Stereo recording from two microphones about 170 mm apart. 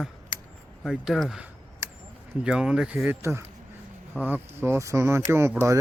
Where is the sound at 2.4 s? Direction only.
5° right (ahead or behind).